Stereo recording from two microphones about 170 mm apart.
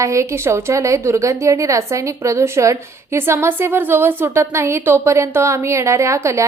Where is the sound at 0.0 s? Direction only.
15° right (ahead or behind).